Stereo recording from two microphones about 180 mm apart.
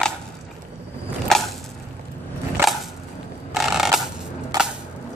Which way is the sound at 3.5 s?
Centre (ahead or behind).